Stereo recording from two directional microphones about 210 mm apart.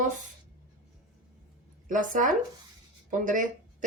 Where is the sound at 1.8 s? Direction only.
40° right (ahead or behind).